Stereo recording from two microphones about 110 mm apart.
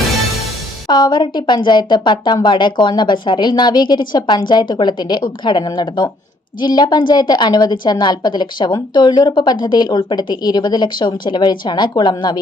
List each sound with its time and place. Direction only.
0.9 s a woman's voice: 40° left (ahead or behind)